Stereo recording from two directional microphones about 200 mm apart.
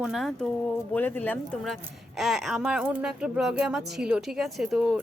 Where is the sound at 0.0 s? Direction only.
Centre (ahead or behind).